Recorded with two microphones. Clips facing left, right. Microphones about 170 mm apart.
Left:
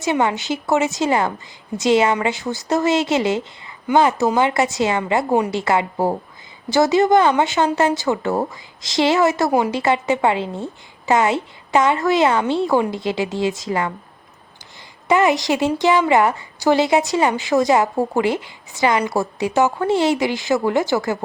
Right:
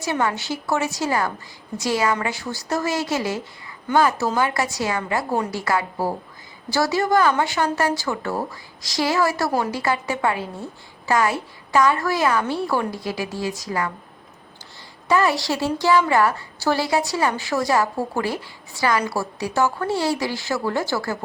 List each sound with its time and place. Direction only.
0.0 s a woman's voice: 20° left (ahead or behind)
15.1 s a woman's voice: 20° left (ahead or behind)